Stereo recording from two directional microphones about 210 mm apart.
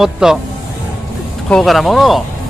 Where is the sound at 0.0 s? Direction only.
Centre (ahead or behind).